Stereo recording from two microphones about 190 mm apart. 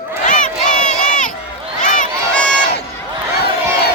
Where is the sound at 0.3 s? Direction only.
40° left (ahead or behind).